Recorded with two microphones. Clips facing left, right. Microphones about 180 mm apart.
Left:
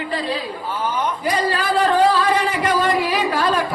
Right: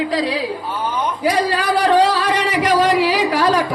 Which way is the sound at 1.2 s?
75° right (ahead or behind).